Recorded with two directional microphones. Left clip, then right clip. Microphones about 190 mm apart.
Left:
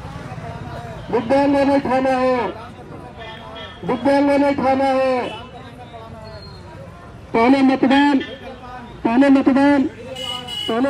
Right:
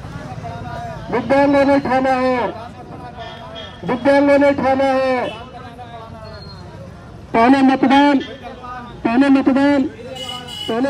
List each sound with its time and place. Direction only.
1.1 s a man's voice: centre (ahead or behind)
3.8 s a man's voice: centre (ahead or behind)
7.3 s a man's voice: centre (ahead or behind)